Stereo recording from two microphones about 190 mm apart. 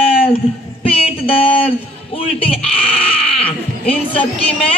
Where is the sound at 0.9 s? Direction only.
30° left (ahead or behind).